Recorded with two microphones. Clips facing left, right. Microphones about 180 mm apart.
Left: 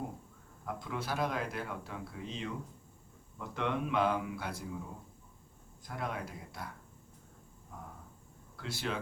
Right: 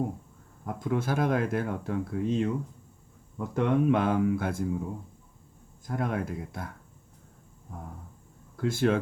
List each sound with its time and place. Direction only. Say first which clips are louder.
0.6 s speech: right 9 dB; 50° right (ahead or behind)
5.8 s speech: right 8 dB; 50° right (ahead or behind)
8.6 s speech: right 13 dB; 50° right (ahead or behind)